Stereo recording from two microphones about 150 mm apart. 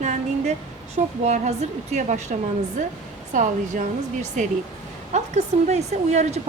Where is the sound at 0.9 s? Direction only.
50° right (ahead or behind).